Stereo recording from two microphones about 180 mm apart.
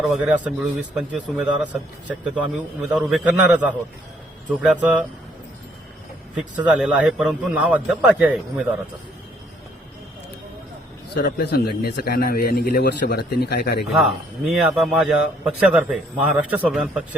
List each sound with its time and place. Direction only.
0.0 s a man's voice: 5° right (ahead or behind)
2.8 s a man's voice: 5° right (ahead or behind)
6.7 s a man's voice: 5° right (ahead or behind)
11.1 s speech: 65° left (ahead or behind)
14.0 s a man's voice: centre (ahead or behind)